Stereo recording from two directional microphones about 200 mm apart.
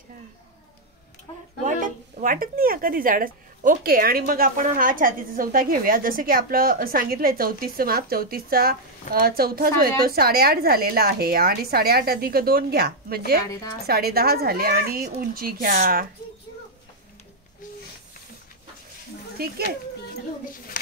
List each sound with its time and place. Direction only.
1.3 s speech: 20° left (ahead or behind)
1.7 s speech: 40° right (ahead or behind)